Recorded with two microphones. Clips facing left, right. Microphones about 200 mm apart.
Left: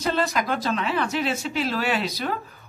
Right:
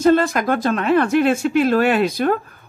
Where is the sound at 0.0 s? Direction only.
50° right (ahead or behind).